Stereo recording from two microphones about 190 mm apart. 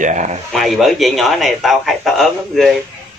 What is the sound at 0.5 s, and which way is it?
A man's voice, centre (ahead or behind).